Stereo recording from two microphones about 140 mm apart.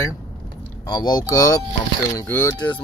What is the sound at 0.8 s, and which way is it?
Speech, 30° left (ahead or behind).